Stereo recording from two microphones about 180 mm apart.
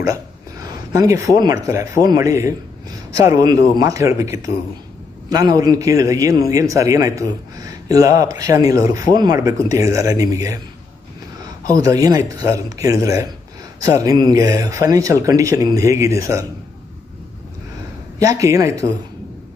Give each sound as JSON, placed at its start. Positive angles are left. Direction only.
{"t": 0.0, "sound": "a man's voice", "side_deg": -20}
{"t": 11.6, "sound": "a man's voice", "side_deg": -20}
{"t": 18.2, "sound": "speech", "side_deg": -20}